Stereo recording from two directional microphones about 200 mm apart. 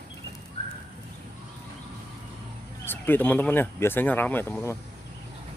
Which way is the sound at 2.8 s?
10° left (ahead or behind).